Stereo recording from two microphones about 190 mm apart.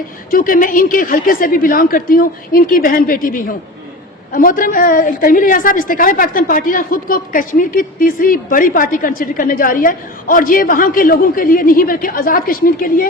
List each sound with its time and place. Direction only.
0.3 s a woman's voice: 50° left (ahead or behind)